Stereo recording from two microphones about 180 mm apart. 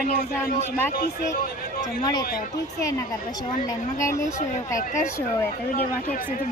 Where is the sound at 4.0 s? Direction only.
15° left (ahead or behind).